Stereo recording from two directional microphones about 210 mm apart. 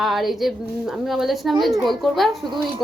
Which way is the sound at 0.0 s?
Centre (ahead or behind).